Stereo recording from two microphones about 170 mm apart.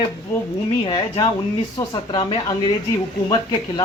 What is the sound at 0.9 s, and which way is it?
Speech, 25° left (ahead or behind).